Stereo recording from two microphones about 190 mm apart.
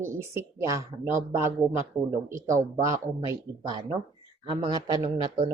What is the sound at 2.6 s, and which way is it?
A man's voice, 15° right (ahead or behind).